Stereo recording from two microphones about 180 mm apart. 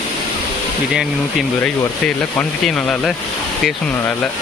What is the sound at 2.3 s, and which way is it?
Speech, 5° left (ahead or behind).